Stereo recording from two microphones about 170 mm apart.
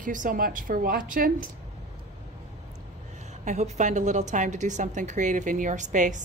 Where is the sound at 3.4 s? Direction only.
45° right (ahead or behind).